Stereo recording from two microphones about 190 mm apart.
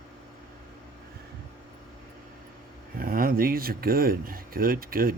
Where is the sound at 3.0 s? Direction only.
50° right (ahead or behind).